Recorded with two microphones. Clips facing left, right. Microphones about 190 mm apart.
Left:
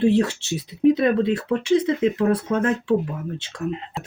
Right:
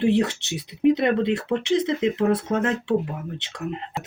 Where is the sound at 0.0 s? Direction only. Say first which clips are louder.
Left 2 dB; 15° right (ahead or behind).